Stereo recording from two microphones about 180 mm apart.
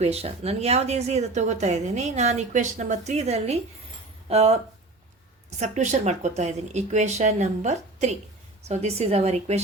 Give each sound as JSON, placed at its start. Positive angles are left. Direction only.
{"t": 0.0, "sound": "speech", "side_deg": -35}
{"t": 5.5, "sound": "speech", "side_deg": -40}